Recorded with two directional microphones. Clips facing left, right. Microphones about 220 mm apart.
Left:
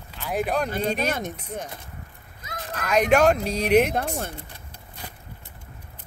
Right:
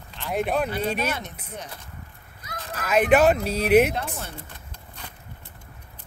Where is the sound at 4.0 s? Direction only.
50° left (ahead or behind).